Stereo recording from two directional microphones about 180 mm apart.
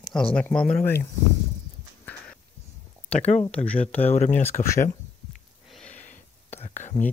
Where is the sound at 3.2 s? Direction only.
40° left (ahead or behind).